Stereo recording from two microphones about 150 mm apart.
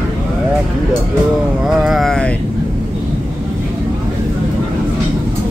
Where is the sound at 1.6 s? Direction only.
Centre (ahead or behind).